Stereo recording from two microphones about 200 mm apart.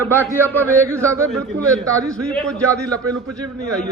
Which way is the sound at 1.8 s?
15° right (ahead or behind).